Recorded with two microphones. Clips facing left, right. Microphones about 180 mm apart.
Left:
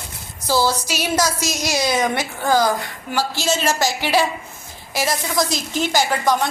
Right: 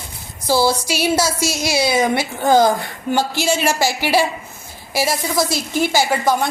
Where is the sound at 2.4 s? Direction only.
20° right (ahead or behind).